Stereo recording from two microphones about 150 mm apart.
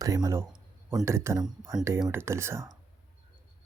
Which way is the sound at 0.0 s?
20° right (ahead or behind).